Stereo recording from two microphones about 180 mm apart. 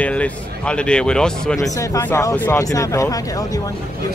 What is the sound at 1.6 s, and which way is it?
Speech, 15° left (ahead or behind).